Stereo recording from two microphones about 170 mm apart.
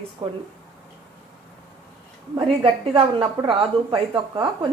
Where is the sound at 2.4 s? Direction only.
35° right (ahead or behind).